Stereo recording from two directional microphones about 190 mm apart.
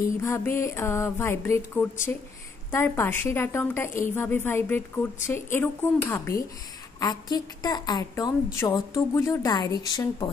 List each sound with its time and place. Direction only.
0.2 s a woman's voice: 15° left (ahead or behind)